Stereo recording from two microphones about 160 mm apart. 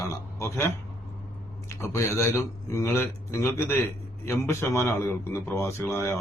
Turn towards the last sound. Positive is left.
turn(degrees=15)  # may be behind; listen again after turning